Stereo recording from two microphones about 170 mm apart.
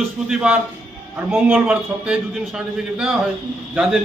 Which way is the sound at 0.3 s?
5° right (ahead or behind).